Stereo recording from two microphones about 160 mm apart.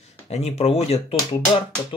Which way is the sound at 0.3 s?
40° left (ahead or behind).